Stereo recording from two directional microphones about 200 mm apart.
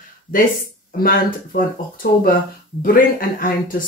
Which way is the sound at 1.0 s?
45° left (ahead or behind).